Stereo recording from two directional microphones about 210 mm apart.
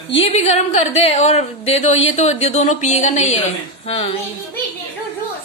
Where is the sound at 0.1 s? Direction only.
30° left (ahead or behind).